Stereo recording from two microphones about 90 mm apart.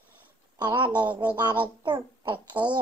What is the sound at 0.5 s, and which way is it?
A child's voice, 60° right (ahead or behind).